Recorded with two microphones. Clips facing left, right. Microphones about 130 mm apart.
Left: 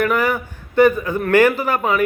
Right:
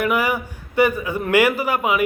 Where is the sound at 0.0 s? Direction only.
10° right (ahead or behind).